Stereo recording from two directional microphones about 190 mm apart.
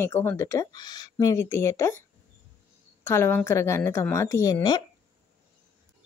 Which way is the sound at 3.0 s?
10° left (ahead or behind).